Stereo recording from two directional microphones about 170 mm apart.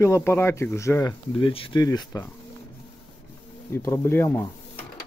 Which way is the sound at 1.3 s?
30° left (ahead or behind).